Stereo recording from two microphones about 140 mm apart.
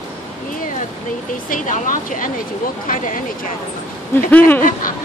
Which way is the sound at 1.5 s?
70° left (ahead or behind).